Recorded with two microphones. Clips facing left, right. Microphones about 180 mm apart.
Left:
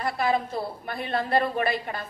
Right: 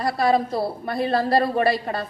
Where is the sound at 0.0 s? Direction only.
35° right (ahead or behind).